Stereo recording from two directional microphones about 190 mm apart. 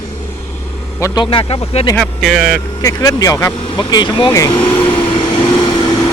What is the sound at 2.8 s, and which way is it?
Speech, 15° left (ahead or behind).